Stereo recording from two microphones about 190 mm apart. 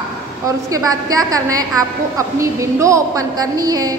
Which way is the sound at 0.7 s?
20° right (ahead or behind).